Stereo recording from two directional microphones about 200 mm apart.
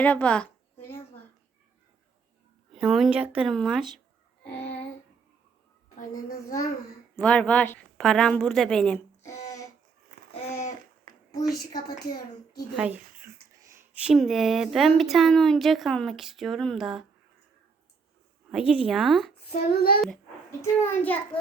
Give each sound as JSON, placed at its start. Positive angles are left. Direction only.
{"t": 0.0, "sound": "a sound", "side_deg": 5}
{"t": 2.7, "sound": "speech", "side_deg": -5}
{"t": 6.0, "sound": "a child's voice", "side_deg": 40}
{"t": 7.2, "sound": "speech", "side_deg": 5}
{"t": 9.2, "sound": "a sound", "side_deg": 15}
{"t": 11.1, "sound": "a sound", "side_deg": -45}
{"t": 12.7, "sound": "speech", "side_deg": -5}
{"t": 18.7, "sound": "speech", "side_deg": -5}
{"t": 19.5, "sound": "child singing", "side_deg": 50}
{"t": 20.6, "sound": "a child's voice", "side_deg": 10}